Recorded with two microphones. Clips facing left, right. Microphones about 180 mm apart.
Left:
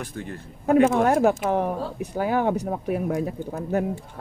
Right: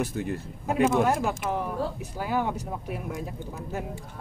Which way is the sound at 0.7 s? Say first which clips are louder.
Left 5 dB; 60° left (ahead or behind).